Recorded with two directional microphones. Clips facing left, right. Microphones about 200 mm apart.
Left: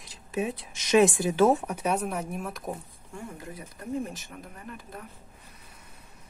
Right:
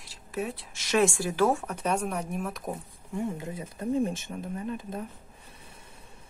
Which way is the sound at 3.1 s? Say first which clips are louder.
Right 7 dB; 25° right (ahead or behind).